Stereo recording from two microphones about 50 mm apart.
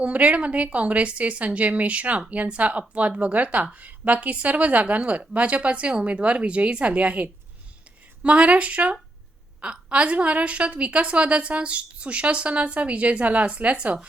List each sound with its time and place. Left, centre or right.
0.0 s a woman's voice: right